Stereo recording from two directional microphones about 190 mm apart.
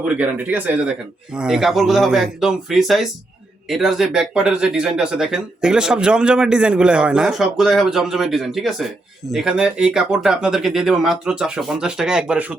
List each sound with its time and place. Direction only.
0.2 s speech: 10° right (ahead or behind)